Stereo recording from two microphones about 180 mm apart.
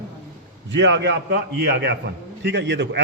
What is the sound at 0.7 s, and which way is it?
A man's voice, 80° right.